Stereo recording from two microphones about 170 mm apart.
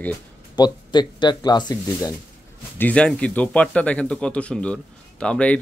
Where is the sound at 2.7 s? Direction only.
10° left (ahead or behind).